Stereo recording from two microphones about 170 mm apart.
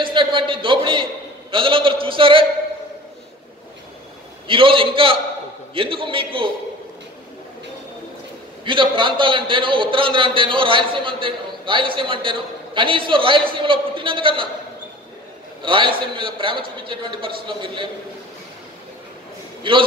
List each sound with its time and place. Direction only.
0.0 s a man's voice: 30° right (ahead or behind)
4.5 s a man's voice: 30° right (ahead or behind)
8.6 s a man's voice: 30° right (ahead or behind)
15.6 s a man's voice: 30° right (ahead or behind)